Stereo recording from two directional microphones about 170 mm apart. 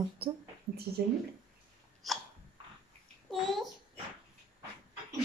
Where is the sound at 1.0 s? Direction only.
70° right (ahead or behind).